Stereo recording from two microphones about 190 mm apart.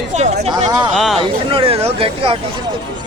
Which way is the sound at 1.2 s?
30° right (ahead or behind).